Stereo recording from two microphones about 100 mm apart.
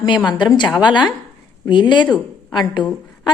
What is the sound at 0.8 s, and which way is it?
A woman's voice, 50° left (ahead or behind).